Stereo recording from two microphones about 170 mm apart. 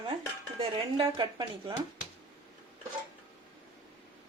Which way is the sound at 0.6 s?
30° right (ahead or behind).